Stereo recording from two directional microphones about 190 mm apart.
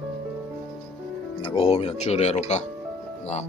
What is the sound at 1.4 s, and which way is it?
Speech, 30° left (ahead or behind).